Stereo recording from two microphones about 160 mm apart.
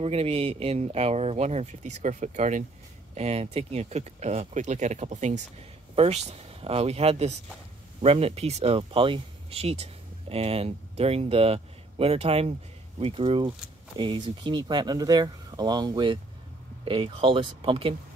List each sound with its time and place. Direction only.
0.0 s speech: 40° right (ahead or behind)